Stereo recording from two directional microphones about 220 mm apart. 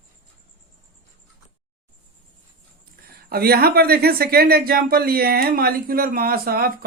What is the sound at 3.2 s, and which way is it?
Speech, 45° right (ahead or behind).